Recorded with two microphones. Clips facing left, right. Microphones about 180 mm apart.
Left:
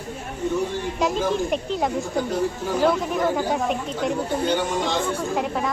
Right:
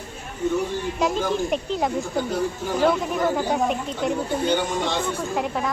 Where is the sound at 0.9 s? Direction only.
Centre (ahead or behind).